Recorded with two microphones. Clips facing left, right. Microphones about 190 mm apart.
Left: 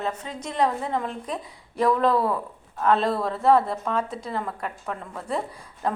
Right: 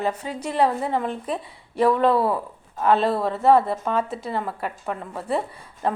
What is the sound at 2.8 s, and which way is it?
A woman's voice, 5° right (ahead or behind).